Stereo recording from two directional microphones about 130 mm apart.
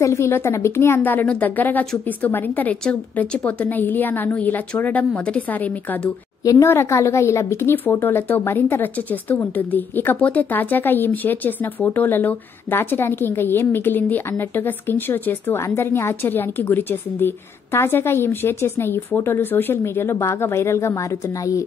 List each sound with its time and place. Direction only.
0.0 s a woman's voice: 20° left (ahead or behind)